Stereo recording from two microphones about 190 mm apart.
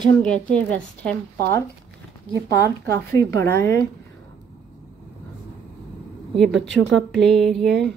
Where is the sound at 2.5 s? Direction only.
60° right (ahead or behind).